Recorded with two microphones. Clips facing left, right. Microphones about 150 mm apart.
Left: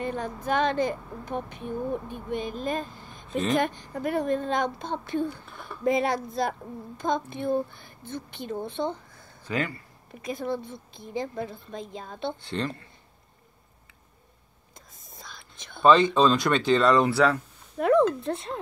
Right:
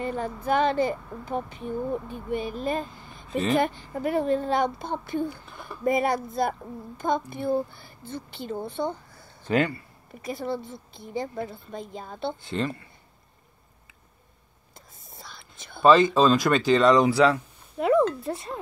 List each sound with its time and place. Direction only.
0.0 s a woman's voice: 10° right (ahead or behind)
1.5 s speech: 60° left (ahead or behind)
2.6 s a woman's voice: 5° right (ahead or behind)
10.4 s a woman's voice: 5° right (ahead or behind)
15.0 s whispering: 5° right (ahead or behind)
15.8 s speech: 5° right (ahead or behind)